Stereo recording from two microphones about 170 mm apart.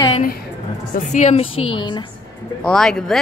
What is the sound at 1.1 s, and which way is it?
Speech, 45° left (ahead or behind).